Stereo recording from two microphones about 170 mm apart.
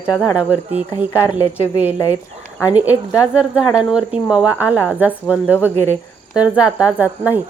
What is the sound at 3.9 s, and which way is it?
Speech, 5° right (ahead or behind).